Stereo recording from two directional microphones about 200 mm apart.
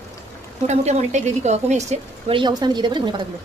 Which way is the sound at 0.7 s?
35° right (ahead or behind).